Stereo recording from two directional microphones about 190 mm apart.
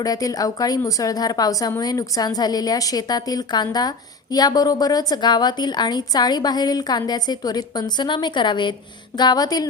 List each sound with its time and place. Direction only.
0.0 s a woman's voice: 20° left (ahead or behind)